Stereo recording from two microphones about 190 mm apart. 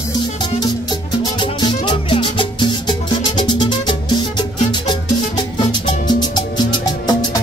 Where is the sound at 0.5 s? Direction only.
20° left (ahead or behind).